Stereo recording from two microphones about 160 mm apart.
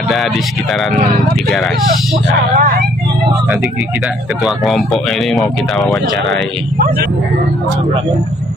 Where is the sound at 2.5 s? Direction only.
60° right (ahead or behind).